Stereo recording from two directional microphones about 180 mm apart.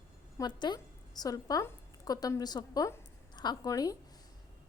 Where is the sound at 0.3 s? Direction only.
25° left (ahead or behind).